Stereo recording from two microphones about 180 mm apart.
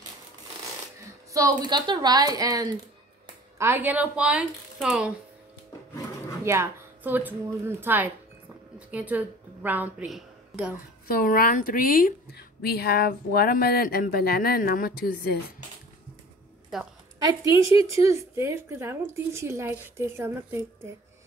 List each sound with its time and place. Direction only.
1.3 s a woman's voice: 20° right (ahead or behind); by 5.1 s 5° right (ahead or behind)
6.4 s a woman's voice: 15° right (ahead or behind)
11.1 s a woman's voice: 50° left (ahead or behind)
16.7 s a woman's voice: centre (ahead or behind)
17.2 s a woman's voice: 20° right (ahead or behind)